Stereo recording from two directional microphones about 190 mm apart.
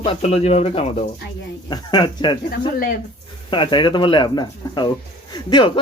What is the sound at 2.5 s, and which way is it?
Speech, 50° left (ahead or behind).